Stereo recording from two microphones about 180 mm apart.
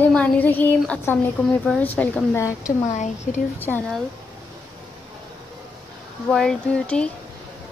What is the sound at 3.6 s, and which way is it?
Speech, 10° left (ahead or behind).